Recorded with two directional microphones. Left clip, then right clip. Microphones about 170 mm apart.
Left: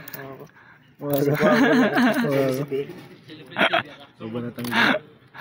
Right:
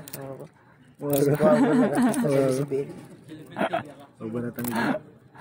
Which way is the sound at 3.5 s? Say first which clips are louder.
Left 7 dB; 5° left (ahead or behind).